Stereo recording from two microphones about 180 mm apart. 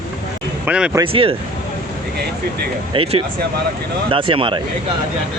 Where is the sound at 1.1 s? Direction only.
30° right (ahead or behind).